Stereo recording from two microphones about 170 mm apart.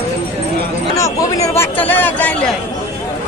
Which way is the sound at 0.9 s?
20° left (ahead or behind).